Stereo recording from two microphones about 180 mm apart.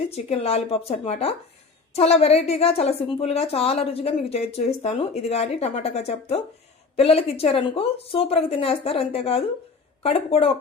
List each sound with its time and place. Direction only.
0.1 s a woman's voice: 35° left (ahead or behind)